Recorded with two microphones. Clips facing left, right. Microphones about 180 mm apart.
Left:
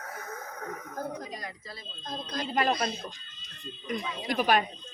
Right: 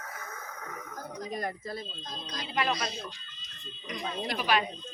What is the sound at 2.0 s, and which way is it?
Speech, 55° left (ahead or behind).